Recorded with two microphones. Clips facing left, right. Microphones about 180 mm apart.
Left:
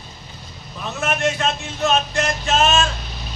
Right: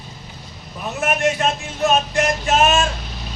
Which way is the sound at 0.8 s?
10° right (ahead or behind).